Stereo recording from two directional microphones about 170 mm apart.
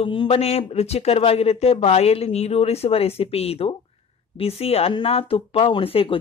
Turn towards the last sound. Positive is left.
turn(degrees=35)  # may be behind; listen again after turning